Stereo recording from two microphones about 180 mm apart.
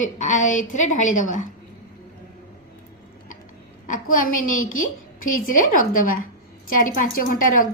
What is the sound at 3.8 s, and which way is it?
A woman's voice, 50° left (ahead or behind).